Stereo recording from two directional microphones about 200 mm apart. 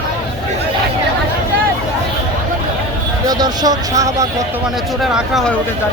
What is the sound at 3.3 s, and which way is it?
Speech, 20° right (ahead or behind).